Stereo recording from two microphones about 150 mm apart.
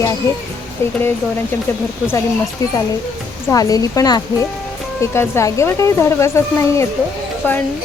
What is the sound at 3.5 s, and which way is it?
Speech, 25° left (ahead or behind).